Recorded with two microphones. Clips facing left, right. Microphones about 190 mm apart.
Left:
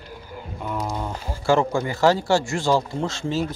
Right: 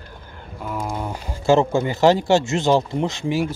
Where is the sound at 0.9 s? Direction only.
15° right (ahead or behind).